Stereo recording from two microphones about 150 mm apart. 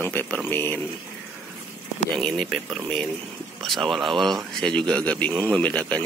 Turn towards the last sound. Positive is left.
turn(degrees=10)  # may be behind; listen again after turning